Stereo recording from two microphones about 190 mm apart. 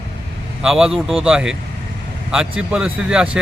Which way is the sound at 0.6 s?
Centre (ahead or behind).